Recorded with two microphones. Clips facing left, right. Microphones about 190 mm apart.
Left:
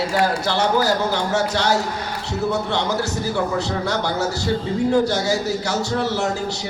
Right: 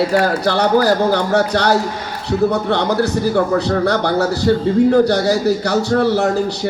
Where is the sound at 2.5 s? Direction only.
55° right (ahead or behind).